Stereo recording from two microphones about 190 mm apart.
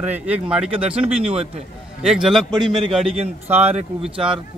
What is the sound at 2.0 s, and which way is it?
A man's voice, 5° right (ahead or behind).